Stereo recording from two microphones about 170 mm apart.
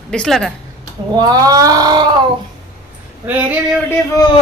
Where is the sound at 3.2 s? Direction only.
10° right (ahead or behind).